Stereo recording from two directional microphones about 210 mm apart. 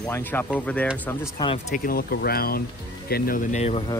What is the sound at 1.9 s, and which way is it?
Speech, 45° left (ahead or behind).